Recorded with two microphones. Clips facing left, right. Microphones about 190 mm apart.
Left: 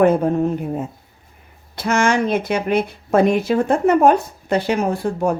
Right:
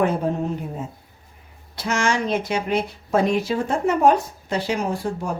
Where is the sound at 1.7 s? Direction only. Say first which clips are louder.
Left 5 dB; 55° left (ahead or behind).